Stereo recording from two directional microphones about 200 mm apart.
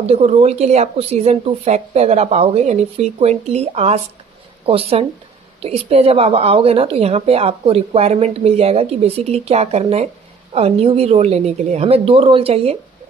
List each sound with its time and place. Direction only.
0.0 s speech: 30° right (ahead or behind)